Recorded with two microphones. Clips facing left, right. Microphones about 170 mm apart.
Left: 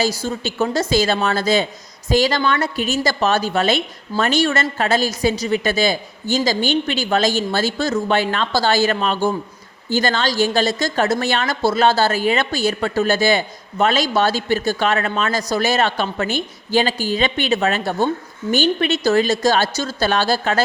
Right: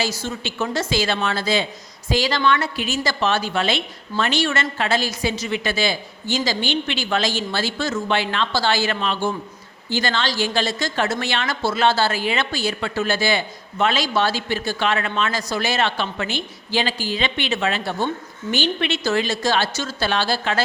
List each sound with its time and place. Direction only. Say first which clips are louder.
0.2 s a woman's voice: left 5 dB; 35° left (ahead or behind)